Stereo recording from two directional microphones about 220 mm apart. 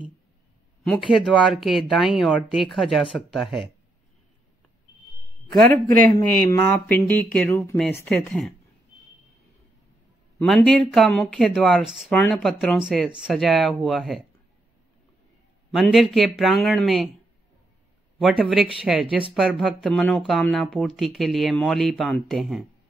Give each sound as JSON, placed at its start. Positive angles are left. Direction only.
{"t": 0.8, "sound": "speech", "side_deg": 0}
{"t": 5.6, "sound": "a man's voice", "side_deg": -40}
{"t": 6.7, "sound": "speech", "side_deg": 5}
{"t": 10.4, "sound": "speech", "side_deg": 0}
{"t": 15.7, "sound": "speech", "side_deg": 0}
{"t": 18.2, "sound": "speech", "side_deg": -5}